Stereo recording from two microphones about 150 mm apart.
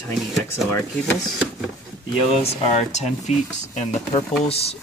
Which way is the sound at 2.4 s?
45° left (ahead or behind).